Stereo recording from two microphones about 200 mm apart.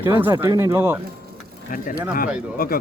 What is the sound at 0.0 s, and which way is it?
Speech, 10° right (ahead or behind).